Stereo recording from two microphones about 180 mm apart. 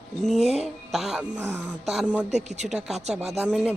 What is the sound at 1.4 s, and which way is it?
Speech, 15° right (ahead or behind).